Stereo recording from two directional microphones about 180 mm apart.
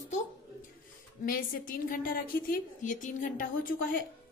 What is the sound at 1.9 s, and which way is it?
A woman's voice, 50° left (ahead or behind).